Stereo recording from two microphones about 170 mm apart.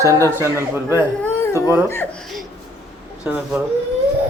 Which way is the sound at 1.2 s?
15° left (ahead or behind).